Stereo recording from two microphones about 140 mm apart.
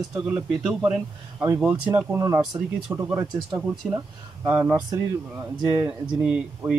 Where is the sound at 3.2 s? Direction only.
30° right (ahead or behind).